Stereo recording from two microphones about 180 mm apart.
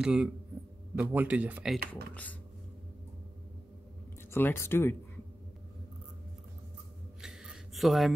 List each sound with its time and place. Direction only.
0.0 s speech: 5° right (ahead or behind)
4.3 s speech: 15° left (ahead or behind)
7.2 s a sound: 5° right (ahead or behind)